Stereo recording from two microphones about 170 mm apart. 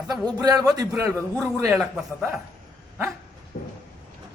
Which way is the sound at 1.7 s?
Centre (ahead or behind).